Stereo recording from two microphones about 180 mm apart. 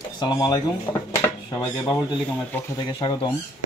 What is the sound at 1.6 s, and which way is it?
Speech, 20° left (ahead or behind).